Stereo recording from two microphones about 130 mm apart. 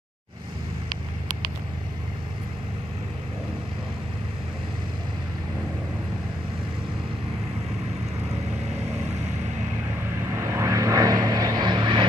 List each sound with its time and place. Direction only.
10.3 s vehicle: 20° right (ahead or behind)